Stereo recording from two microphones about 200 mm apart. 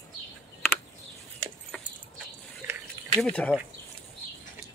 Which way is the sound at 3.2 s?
5° left (ahead or behind).